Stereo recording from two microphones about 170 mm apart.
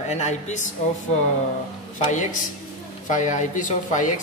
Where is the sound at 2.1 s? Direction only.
45° left (ahead or behind).